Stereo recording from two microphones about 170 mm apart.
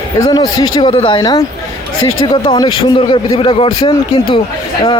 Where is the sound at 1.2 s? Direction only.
20° left (ahead or behind).